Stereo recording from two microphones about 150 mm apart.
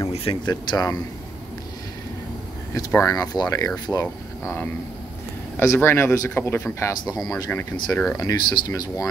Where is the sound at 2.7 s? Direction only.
20° left (ahead or behind).